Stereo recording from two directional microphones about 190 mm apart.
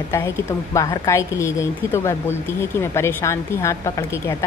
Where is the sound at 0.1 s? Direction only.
15° left (ahead or behind).